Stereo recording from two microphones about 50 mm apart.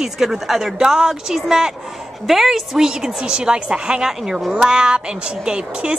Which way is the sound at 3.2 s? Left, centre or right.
Centre.